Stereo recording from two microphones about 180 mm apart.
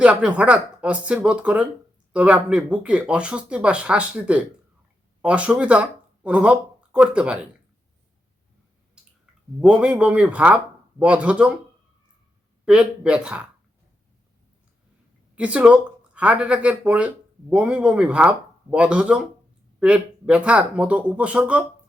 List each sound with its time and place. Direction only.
0.0 s speech: 5° right (ahead or behind)
9.6 s speech: 5° right (ahead or behind)
12.6 s speech: 5° right (ahead or behind)
15.4 s speech: 5° right (ahead or behind)